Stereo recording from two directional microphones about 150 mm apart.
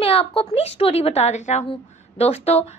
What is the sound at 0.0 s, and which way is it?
A woman's voice, 40° left (ahead or behind).